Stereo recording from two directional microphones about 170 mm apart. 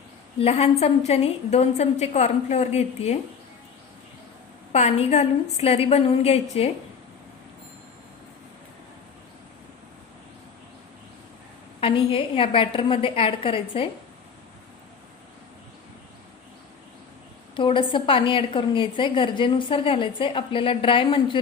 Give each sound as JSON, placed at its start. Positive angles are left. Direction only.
{"t": 0.3, "sound": "a woman's voice", "side_deg": 35}
{"t": 4.7, "sound": "a woman's voice", "side_deg": 40}
{"t": 11.8, "sound": "a woman's voice", "side_deg": 30}
{"t": 17.5, "sound": "a woman's voice", "side_deg": 30}